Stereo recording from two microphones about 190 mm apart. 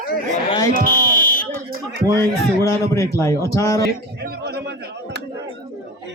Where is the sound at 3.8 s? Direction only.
55° right (ahead or behind).